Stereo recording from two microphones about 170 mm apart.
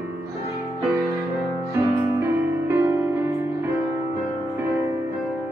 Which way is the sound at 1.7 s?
15° right (ahead or behind).